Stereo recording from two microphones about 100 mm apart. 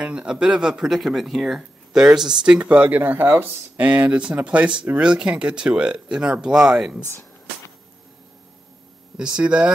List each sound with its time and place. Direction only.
0.0 s speech: 10° right (ahead or behind)
7.0 s a sound: 25° left (ahead or behind)
9.1 s speech: 10° right (ahead or behind)